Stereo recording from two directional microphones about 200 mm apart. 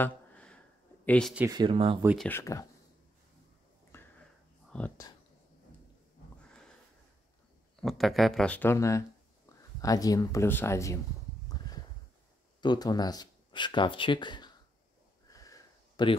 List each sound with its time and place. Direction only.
0.0 s a sound: 5° left (ahead or behind)
1.0 s speech: 5° left (ahead or behind)
1.5 s speech: 25° right (ahead or behind)
2.1 s speech: 10° left (ahead or behind)
3.9 s a sound: 10° left (ahead or behind)
4.6 s whispering: 5° left (ahead or behind)
7.8 s speech: centre (ahead or behind)
12.6 s speech: 20° left (ahead or behind)
15.2 s sniff: 15° left (ahead or behind)